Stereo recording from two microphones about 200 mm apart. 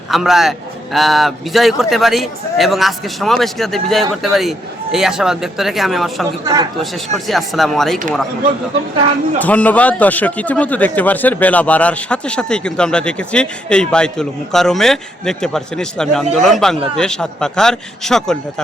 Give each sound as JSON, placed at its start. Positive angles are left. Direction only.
{"t": 0.1, "sound": "a man's voice", "side_deg": 0}
{"t": 6.4, "sound": "speech", "side_deg": -20}
{"t": 6.9, "sound": "a man's voice", "side_deg": 0}
{"t": 9.4, "sound": "a man's voice", "side_deg": 10}